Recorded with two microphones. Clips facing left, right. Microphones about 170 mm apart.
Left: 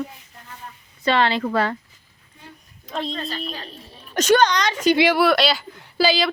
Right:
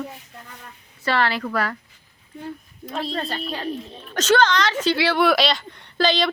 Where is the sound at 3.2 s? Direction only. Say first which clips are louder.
Right 3 dB; 60° right (ahead or behind).